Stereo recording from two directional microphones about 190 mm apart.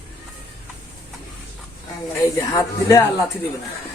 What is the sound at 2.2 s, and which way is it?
Speech, 15° left (ahead or behind).